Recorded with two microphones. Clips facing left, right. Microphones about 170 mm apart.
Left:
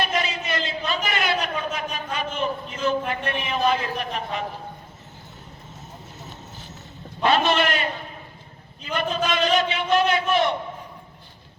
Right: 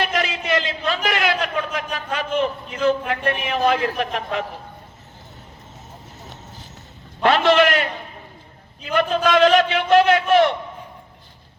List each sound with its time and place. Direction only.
0.0 s a sound: 70° right (ahead or behind)
1.7 s a man's voice: 65° right (ahead or behind)
7.2 s a man's voice: 70° right (ahead or behind)
8.9 s a man's voice: 65° right (ahead or behind)